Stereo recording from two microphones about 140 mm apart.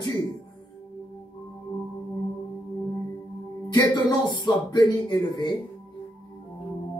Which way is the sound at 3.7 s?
30° left (ahead or behind).